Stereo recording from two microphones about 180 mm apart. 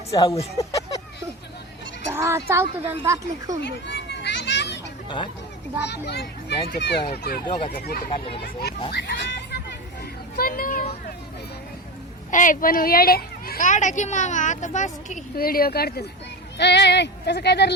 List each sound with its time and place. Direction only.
0.1 s speech: 20° left (ahead or behind)
2.1 s a woman's voice: 15° right (ahead or behind)
3.8 s children playing: 75° left (ahead or behind)
5.0 s speech: 25° left (ahead or behind)
5.8 s speech: 65° left (ahead or behind)
7.1 s a child's voice: 60° left (ahead or behind)
10.3 s speech: 55° left (ahead or behind)
12.3 s speech: 45° left (ahead or behind)
15.1 s speech: 55° left (ahead or behind)
16.6 s speech: 70° left (ahead or behind)